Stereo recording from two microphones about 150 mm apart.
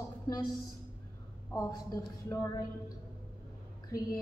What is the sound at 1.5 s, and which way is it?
Female singing, 25° left (ahead or behind).